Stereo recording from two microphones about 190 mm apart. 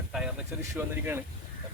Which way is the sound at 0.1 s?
5° right (ahead or behind).